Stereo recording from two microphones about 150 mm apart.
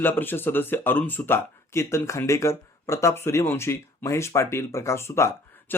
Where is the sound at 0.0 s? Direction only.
15° left (ahead or behind).